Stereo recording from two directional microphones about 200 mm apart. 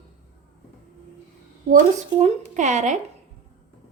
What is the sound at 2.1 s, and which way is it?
Speech, 35° right (ahead or behind).